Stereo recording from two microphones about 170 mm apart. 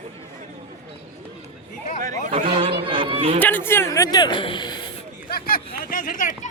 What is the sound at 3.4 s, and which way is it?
A man's voice, 10° left (ahead or behind).